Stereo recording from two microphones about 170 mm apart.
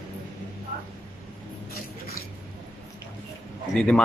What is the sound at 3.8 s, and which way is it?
Speech, 5° left (ahead or behind).